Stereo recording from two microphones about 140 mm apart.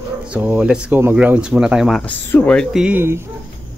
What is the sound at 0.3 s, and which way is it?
Speech, 10° right (ahead or behind).